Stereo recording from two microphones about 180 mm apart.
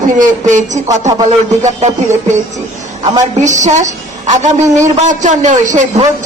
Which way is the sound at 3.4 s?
40° right (ahead or behind).